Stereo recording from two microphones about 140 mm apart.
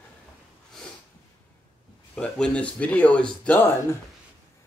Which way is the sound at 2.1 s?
5° left (ahead or behind).